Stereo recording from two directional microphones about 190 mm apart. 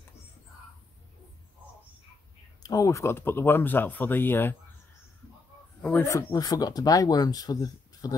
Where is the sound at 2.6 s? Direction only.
15° left (ahead or behind).